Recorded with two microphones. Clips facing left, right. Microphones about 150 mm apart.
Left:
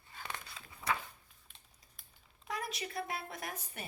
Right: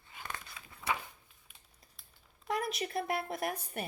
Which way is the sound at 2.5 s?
55° right (ahead or behind).